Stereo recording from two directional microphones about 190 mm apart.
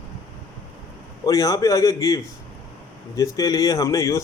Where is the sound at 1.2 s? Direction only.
20° left (ahead or behind).